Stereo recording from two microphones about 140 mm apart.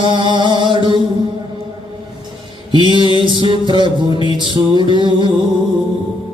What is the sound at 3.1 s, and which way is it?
Music, 35° right (ahead or behind).